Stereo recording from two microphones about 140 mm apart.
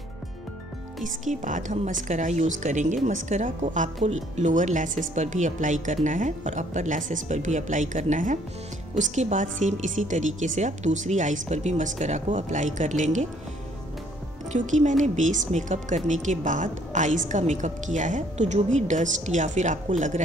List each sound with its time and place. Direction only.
1.0 s a woman's voice: 65° right (ahead or behind)
14.5 s a woman's voice: 60° right (ahead or behind)